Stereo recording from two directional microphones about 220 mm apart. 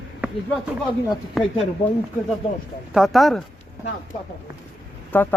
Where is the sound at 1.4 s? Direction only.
Centre (ahead or behind).